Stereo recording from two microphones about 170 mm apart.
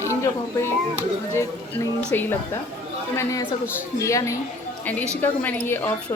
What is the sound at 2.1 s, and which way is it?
Speech, 15° left (ahead or behind).